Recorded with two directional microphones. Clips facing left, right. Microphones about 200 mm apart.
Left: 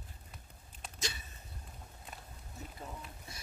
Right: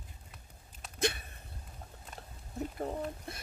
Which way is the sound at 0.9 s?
60° right (ahead or behind).